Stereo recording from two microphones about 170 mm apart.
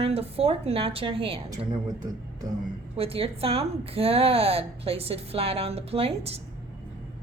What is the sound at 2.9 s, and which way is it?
A woman's voice, 35° right (ahead or behind).